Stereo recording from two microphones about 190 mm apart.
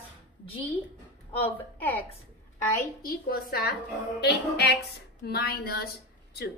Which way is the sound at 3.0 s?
50° left (ahead or behind).